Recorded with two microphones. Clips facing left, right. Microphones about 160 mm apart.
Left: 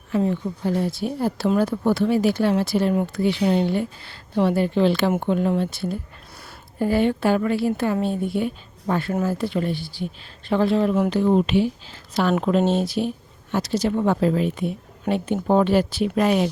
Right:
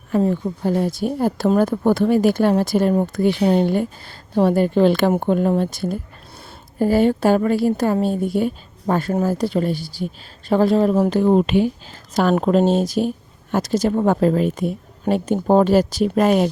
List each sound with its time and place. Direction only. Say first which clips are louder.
0.1 s a woman's voice: right 3 dB; 45° right (ahead or behind)